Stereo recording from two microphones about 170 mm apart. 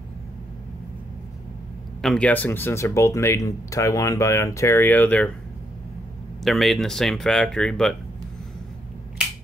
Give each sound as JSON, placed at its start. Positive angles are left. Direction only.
{"t": 2.0, "sound": "speech", "side_deg": 5}
{"t": 6.4, "sound": "speech", "side_deg": 0}